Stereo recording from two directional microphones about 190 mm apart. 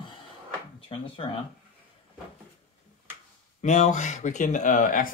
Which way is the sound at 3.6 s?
40° left (ahead or behind).